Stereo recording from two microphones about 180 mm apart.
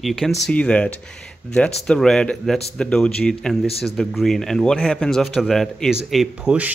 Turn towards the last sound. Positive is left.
turn(degrees=-5)  # may be behind; listen again after turning